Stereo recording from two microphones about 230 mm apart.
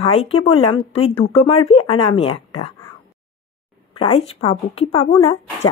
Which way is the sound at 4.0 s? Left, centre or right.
Left.